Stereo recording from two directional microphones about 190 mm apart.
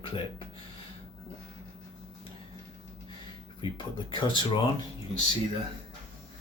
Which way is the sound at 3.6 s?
25° left (ahead or behind).